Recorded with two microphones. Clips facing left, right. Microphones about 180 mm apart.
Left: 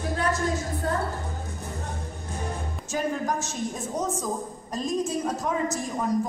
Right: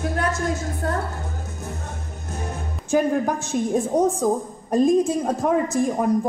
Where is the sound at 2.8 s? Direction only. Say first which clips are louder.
Right 8 dB; 55° right (ahead or behind).